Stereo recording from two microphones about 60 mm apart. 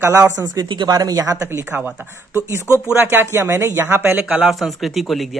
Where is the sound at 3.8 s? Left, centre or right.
Right.